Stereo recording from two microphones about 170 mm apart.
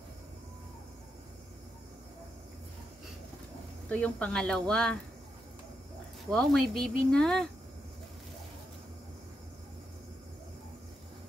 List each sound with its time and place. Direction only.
3.9 s speech: 5° left (ahead or behind)
6.3 s speech: 5° left (ahead or behind)